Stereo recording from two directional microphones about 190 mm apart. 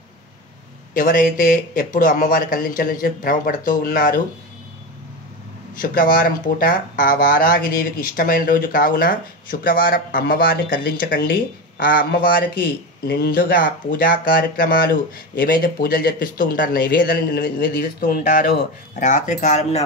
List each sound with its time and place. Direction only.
0.9 s speech: 45° left (ahead or behind)
5.8 s speech: 45° left (ahead or behind)